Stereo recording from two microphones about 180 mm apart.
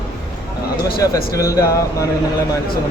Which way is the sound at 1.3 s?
20° left (ahead or behind).